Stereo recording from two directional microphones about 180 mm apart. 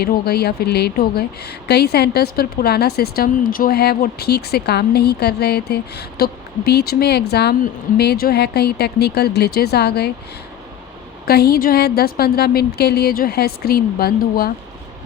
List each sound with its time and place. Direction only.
0.0 s speech: 60° left (ahead or behind)
11.3 s speech: 60° left (ahead or behind)